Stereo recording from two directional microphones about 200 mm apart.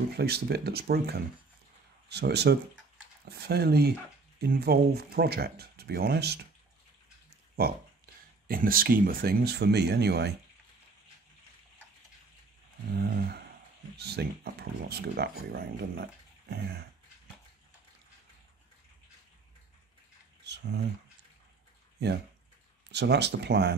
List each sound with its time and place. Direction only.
0.2 s speech: 55° right (ahead or behind)
8.5 s speech: 45° right (ahead or behind)
12.9 s speech: 50° right (ahead or behind)
20.4 s a sound: 60° right (ahead or behind)
22.8 s speech: 55° right (ahead or behind)